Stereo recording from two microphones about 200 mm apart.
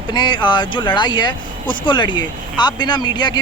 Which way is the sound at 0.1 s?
20° left (ahead or behind).